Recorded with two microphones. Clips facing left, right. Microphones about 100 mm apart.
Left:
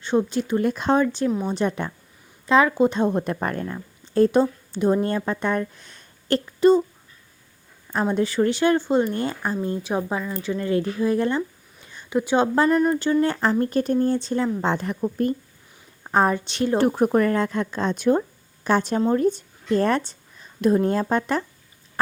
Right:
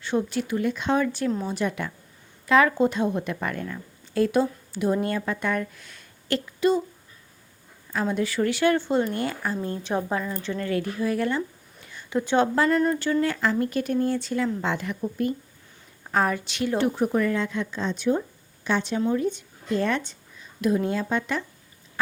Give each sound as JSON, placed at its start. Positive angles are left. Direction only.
{"t": 0.0, "sound": "speech", "side_deg": 25}
{"t": 0.5, "sound": "speech", "side_deg": 40}
{"t": 1.0, "sound": "speech", "side_deg": 20}
{"t": 2.5, "sound": "speech", "side_deg": 20}
{"t": 3.0, "sound": "speech", "side_deg": 40}
{"t": 7.9, "sound": "speech", "side_deg": 30}
{"t": 10.7, "sound": "speech", "side_deg": 25}
{"t": 11.9, "sound": "a sound", "side_deg": 20}
{"t": 12.5, "sound": "speech", "side_deg": 20}
{"t": 13.3, "sound": "speech", "side_deg": 35}
{"t": 16.0, "sound": "a woman's voice", "side_deg": 30}